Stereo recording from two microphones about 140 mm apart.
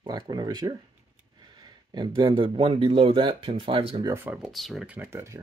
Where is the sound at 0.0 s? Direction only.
30° right (ahead or behind).